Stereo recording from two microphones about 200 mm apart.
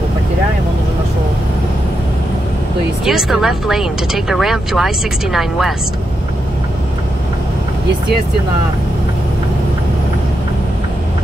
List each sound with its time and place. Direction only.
3.1 s speech: centre (ahead or behind)